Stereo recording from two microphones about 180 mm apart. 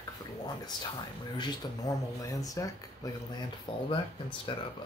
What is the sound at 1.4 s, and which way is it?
Speech, 20° left (ahead or behind).